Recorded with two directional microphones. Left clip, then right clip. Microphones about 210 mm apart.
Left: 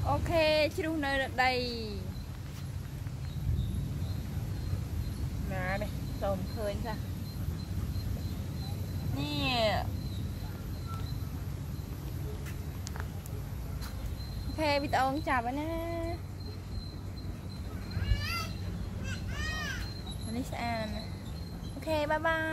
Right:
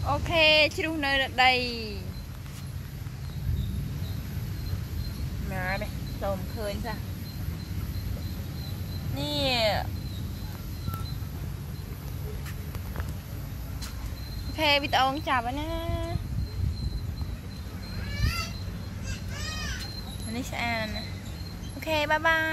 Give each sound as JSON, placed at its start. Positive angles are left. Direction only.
{"t": 0.0, "sound": "speech", "side_deg": -10}
{"t": 5.5, "sound": "speech", "side_deg": -20}
{"t": 9.2, "sound": "speech", "side_deg": 0}
{"t": 14.6, "sound": "speech", "side_deg": -5}
{"t": 20.3, "sound": "speech", "side_deg": -10}